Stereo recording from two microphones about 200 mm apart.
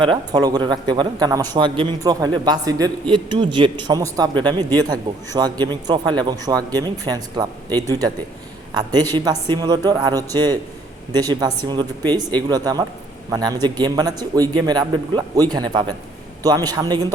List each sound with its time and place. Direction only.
0.1 s a man's voice: 20° right (ahead or behind)